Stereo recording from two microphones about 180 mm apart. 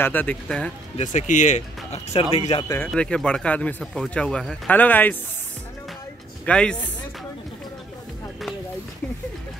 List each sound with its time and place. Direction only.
0.0 s speech: 10° left (ahead or behind)
0.9 s speech: 45° left (ahead or behind)
2.9 s speech: 5° left (ahead or behind)
6.4 s speech: 5° left (ahead or behind)